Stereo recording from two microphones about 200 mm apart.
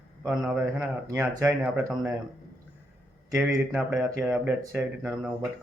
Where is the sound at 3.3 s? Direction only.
5° right (ahead or behind).